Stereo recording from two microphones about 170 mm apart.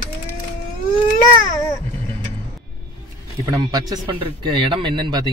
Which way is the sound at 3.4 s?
20° right (ahead or behind).